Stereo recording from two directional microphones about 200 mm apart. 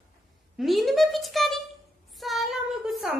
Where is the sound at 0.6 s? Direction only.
Centre (ahead or behind).